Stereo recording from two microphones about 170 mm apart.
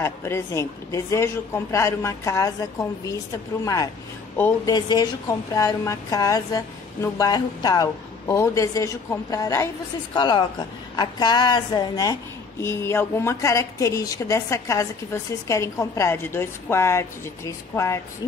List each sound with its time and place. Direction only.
0.0 s a woman's voice: 15° left (ahead or behind)
4.7 s a woman's voice: 25° left (ahead or behind)